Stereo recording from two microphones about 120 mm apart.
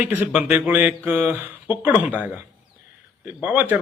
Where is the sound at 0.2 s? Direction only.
15° right (ahead or behind).